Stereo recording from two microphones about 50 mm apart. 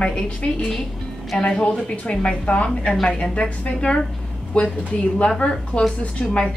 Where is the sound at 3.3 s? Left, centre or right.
Left.